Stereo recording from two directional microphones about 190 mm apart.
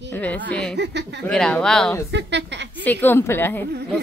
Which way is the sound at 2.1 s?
65° right (ahead or behind).